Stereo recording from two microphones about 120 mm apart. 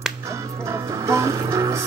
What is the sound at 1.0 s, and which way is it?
Music, 25° right (ahead or behind).